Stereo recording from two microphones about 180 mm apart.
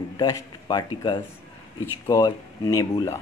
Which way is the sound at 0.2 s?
25° left (ahead or behind).